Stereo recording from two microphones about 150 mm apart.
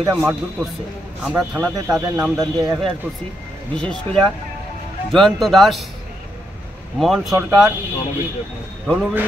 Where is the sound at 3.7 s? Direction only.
5° left (ahead or behind).